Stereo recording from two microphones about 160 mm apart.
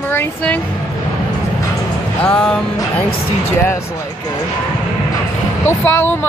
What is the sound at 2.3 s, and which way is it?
Speech, 5° left (ahead or behind).